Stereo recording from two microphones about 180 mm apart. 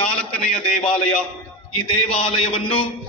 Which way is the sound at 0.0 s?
5° left (ahead or behind).